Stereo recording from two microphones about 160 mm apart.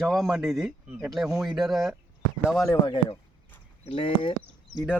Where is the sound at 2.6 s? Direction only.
30° left (ahead or behind).